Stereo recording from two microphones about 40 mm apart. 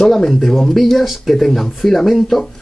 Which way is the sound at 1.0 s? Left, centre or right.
Centre.